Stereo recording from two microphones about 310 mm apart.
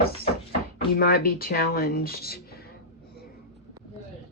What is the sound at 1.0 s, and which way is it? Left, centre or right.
Speech, left.